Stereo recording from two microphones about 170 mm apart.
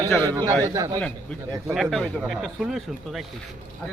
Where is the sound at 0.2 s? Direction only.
20° right (ahead or behind).